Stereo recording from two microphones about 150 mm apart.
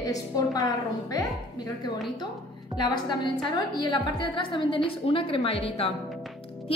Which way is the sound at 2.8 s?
30° left (ahead or behind).